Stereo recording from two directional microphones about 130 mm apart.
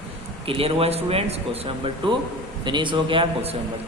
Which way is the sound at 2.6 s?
35° right (ahead or behind).